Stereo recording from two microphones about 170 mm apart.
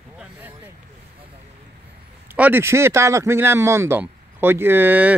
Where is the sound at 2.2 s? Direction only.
10° right (ahead or behind).